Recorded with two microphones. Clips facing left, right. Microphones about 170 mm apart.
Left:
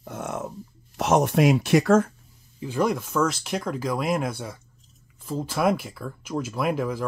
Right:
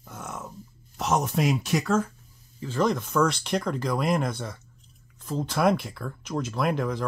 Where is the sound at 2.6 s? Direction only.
10° left (ahead or behind).